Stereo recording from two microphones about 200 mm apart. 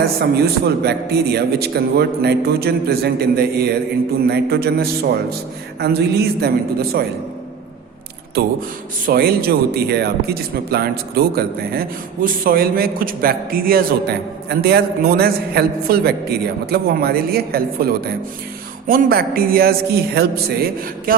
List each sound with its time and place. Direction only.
0.0 s speech: 50° right (ahead or behind)
9.0 s speech: 50° right (ahead or behind)